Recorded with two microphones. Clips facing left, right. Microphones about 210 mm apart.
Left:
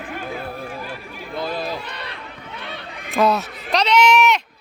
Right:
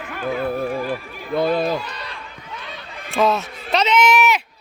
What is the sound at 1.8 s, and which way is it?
Run, 60° left (ahead or behind).